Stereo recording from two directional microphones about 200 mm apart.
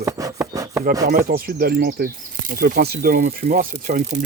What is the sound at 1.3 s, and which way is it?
Speech, 45° right (ahead or behind).